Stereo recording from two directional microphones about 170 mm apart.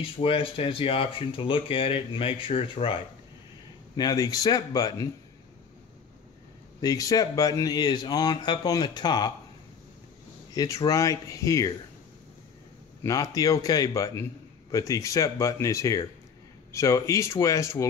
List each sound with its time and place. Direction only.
0.2 s speech: 30° left (ahead or behind)
6.8 s speech: 20° left (ahead or behind)
10.5 s speech: 20° left (ahead or behind)
13.0 s speech: 20° left (ahead or behind)